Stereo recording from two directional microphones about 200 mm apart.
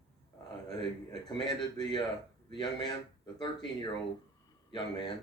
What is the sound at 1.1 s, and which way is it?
A man's voice, 20° left (ahead or behind).